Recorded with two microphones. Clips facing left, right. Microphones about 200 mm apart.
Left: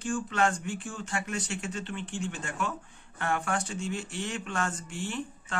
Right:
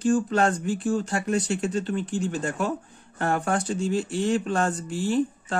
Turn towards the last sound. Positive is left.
turn(degrees=-35)  # may be behind; listen again after turning